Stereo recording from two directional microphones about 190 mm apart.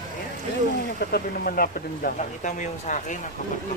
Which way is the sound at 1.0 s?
50° left (ahead or behind).